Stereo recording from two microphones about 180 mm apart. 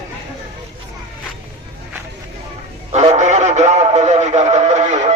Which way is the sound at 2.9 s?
35° right (ahead or behind).